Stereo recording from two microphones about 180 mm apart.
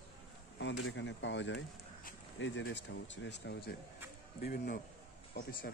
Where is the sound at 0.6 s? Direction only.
85° left; by 3.7 s 65° left (ahead or behind).